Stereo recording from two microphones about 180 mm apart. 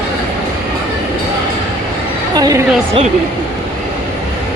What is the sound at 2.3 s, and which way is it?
Speech, 20° right (ahead or behind).